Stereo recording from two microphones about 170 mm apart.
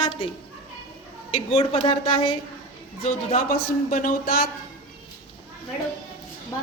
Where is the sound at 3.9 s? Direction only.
55° left (ahead or behind).